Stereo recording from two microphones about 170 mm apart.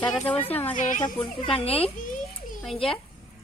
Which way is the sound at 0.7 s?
45° left (ahead or behind).